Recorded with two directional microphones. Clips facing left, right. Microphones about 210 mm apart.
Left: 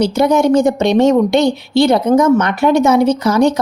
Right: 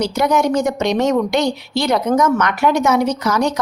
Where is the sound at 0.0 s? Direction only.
25° left (ahead or behind).